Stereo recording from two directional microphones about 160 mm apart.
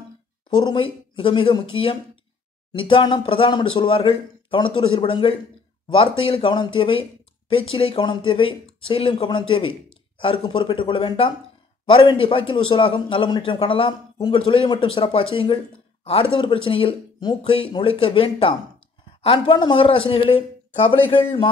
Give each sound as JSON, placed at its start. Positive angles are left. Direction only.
{"t": 0.5, "sound": "a man's voice", "side_deg": 25}